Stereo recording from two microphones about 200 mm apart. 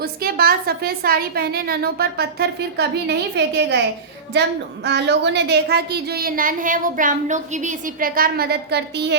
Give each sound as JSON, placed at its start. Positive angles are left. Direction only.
{"t": 0.0, "sound": "a woman's voice", "side_deg": -50}